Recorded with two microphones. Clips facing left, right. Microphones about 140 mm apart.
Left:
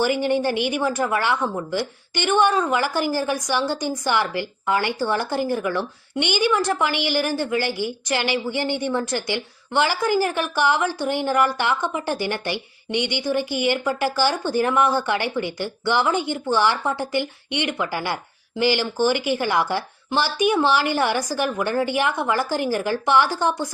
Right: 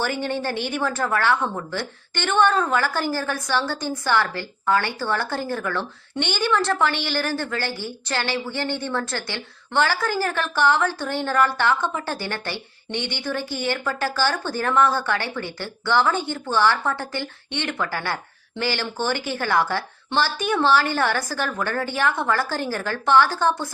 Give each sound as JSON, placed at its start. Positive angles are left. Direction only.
{"t": 0.0, "sound": "speech", "side_deg": 15}